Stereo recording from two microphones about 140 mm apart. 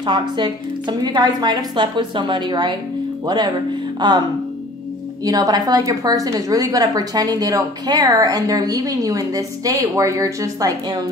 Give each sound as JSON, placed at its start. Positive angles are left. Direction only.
{"t": 0.0, "sound": "a woman's voice", "side_deg": -35}
{"t": 5.2, "sound": "a woman's voice", "side_deg": -25}